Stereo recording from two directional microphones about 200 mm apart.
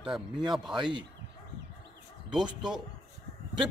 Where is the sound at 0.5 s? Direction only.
Centre (ahead or behind).